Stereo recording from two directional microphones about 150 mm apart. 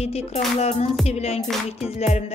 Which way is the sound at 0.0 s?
45° left (ahead or behind).